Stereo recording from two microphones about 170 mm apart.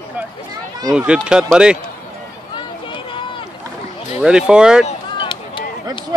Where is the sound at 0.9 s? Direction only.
5° right (ahead or behind).